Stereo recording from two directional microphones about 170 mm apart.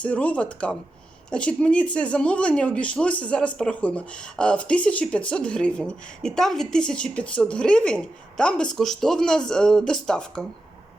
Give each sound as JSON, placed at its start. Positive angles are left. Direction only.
{"t": 0.0, "sound": "a woman's voice", "side_deg": 10}